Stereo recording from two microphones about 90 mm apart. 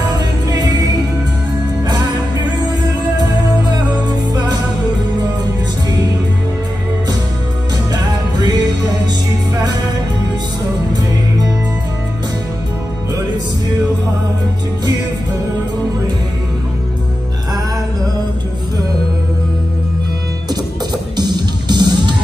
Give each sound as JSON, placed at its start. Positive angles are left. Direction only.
{"t": 0.5, "sound": "music", "side_deg": -45}
{"t": 3.7, "sound": "music", "side_deg": -50}
{"t": 7.9, "sound": "music", "side_deg": -50}
{"t": 21.2, "sound": "music", "side_deg": -50}